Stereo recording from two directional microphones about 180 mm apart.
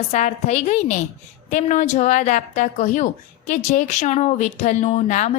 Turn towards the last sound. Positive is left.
turn(degrees=45)  # may be behind; listen again after turning